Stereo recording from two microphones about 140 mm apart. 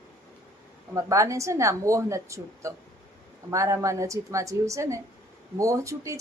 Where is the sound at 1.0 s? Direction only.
20° right (ahead or behind).